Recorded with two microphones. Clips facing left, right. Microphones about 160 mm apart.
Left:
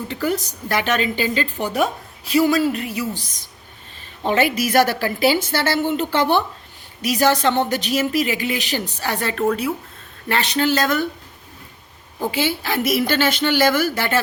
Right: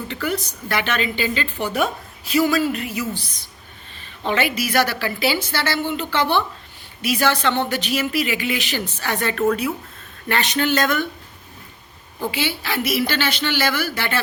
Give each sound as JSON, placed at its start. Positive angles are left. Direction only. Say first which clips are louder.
{"t": 0.1, "sound": "speech", "louder": "left 3 dB", "side_deg": 40}
{"t": 4.2, "sound": "a woman's voice", "louder": "left 3 dB", "side_deg": 45}
{"t": 12.3, "sound": "a woman's voice", "louder": "left 4 dB", "side_deg": 45}